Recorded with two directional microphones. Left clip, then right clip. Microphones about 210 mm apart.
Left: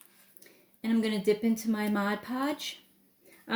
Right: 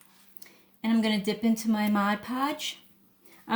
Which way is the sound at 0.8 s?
35° right (ahead or behind).